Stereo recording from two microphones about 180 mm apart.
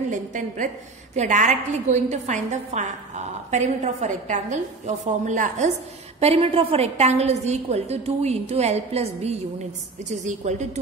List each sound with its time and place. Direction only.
0.1 s a woman's voice: 45° right (ahead or behind)